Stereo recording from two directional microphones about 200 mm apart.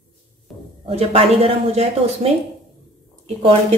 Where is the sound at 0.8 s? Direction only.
30° right (ahead or behind).